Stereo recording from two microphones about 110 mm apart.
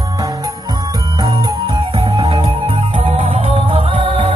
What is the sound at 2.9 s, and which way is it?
Music, 65° right (ahead or behind).